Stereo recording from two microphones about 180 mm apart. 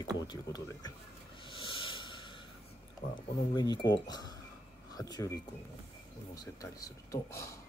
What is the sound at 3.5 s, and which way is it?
Speech, 25° left (ahead or behind).